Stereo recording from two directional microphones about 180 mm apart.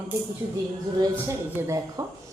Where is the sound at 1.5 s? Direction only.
15° right (ahead or behind).